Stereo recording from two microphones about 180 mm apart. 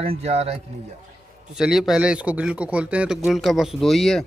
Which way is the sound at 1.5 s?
Centre (ahead or behind).